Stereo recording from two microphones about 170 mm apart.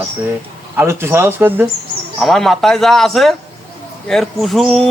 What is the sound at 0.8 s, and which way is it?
Speech, 15° right (ahead or behind).